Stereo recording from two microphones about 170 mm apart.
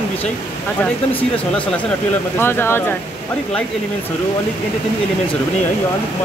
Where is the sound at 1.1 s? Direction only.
10° left (ahead or behind).